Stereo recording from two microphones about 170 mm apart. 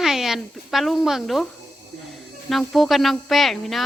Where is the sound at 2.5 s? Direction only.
Centre (ahead or behind).